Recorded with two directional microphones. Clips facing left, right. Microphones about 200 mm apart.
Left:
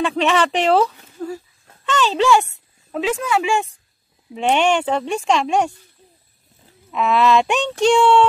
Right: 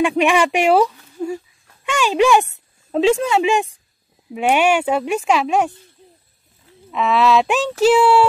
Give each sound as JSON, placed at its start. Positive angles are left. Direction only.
{"t": 0.0, "sound": "speech", "side_deg": -15}
{"t": 2.9, "sound": "speech", "side_deg": -30}
{"t": 4.3, "sound": "speech", "side_deg": -10}
{"t": 6.9, "sound": "speech", "side_deg": 0}